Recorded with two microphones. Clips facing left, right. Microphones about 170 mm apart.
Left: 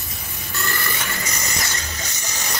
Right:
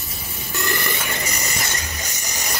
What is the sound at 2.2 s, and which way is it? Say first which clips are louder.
Music: right 1 dB; 15° right (ahead or behind).